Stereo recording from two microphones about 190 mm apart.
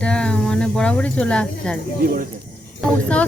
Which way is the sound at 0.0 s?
5° left (ahead or behind).